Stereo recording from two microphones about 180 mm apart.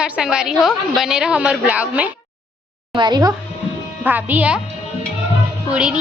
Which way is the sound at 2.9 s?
25° right (ahead or behind).